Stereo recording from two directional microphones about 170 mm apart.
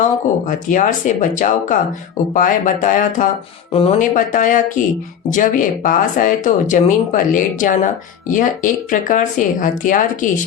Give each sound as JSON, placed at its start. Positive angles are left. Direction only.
{"t": 0.4, "sound": "speech", "side_deg": 50}
{"t": 3.7, "sound": "speech", "side_deg": 35}
{"t": 4.1, "sound": "speech", "side_deg": 50}